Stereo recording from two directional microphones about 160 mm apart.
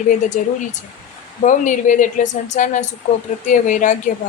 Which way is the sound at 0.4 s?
55° left (ahead or behind).